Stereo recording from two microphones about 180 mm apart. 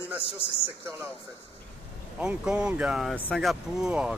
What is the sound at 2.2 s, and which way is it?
Speech, 5° right (ahead or behind).